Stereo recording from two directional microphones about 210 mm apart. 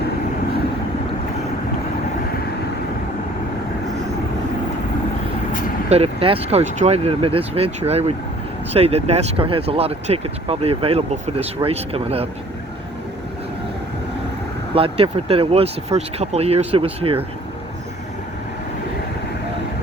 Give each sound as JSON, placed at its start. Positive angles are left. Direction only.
{"t": 5.9, "sound": "speech", "side_deg": -30}
{"t": 14.8, "sound": "speech", "side_deg": -25}